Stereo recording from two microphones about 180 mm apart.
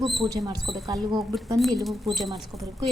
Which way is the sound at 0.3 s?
20° right (ahead or behind).